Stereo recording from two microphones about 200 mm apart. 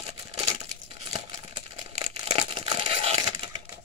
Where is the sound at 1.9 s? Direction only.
30° right (ahead or behind).